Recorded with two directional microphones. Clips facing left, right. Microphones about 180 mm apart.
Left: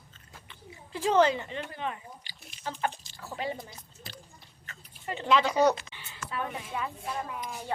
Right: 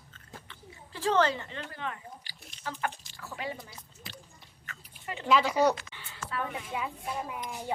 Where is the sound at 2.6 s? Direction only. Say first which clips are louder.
Left 2 dB; 25° left (ahead or behind).